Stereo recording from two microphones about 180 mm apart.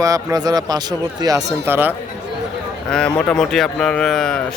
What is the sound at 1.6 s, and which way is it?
Speech, 10° right (ahead or behind).